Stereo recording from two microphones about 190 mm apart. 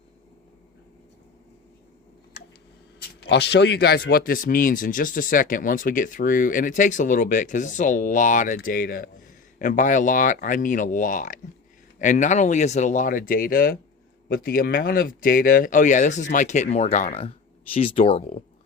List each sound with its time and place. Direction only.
3.2 s speech: 60° left (ahead or behind); by 18.4 s 35° left (ahead or behind)